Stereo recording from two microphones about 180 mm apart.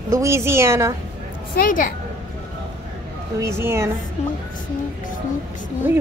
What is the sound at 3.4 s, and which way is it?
Speech, 15° right (ahead or behind).